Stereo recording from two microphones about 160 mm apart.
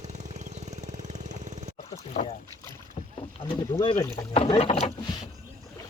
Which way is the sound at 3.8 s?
35° left (ahead or behind).